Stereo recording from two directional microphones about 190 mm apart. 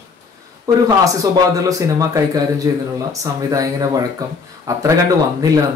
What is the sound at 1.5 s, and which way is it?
Speech, 20° right (ahead or behind).